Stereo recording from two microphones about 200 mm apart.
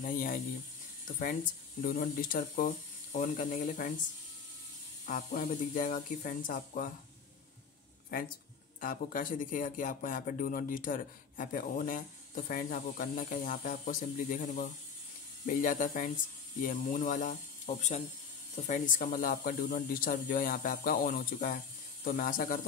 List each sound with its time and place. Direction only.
0.0 s speech: 45° left (ahead or behind)
5.0 s speech: 45° left (ahead or behind)
8.8 s speech: 40° left (ahead or behind)